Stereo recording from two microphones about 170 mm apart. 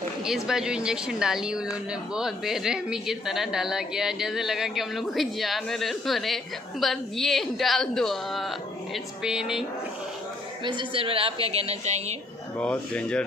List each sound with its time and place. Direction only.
0.2 s speech: 5° right (ahead or behind)
10.6 s a woman's voice: 25° right (ahead or behind)
12.5 s speech: 5° left (ahead or behind)